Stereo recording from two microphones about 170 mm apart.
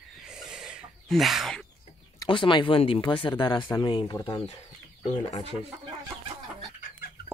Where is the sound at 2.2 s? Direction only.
30° left (ahead or behind).